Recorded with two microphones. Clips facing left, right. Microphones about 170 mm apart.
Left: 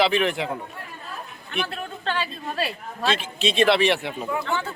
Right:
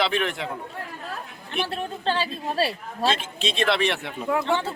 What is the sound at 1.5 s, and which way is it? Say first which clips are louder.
Speech: right 1 dB; 35° right (ahead or behind).